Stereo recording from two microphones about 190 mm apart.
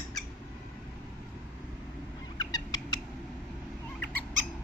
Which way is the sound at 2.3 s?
20° left (ahead or behind).